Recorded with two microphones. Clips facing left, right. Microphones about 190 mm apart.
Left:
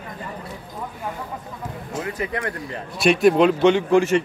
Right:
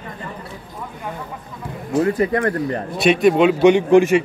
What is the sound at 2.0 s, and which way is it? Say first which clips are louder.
Speech: right 8 dB; 45° right (ahead or behind).